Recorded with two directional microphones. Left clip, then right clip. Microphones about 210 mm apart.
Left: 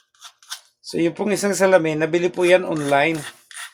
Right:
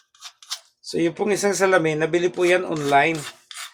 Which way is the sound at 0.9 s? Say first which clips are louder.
Left 1 dB; 20° left (ahead or behind).